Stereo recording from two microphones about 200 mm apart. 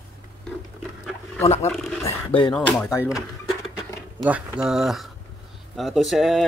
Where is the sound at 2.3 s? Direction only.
25° left (ahead or behind).